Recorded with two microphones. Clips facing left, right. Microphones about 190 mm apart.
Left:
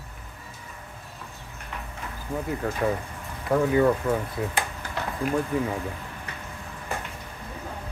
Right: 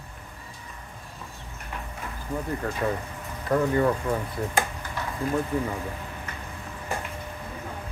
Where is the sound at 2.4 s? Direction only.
5° left (ahead or behind).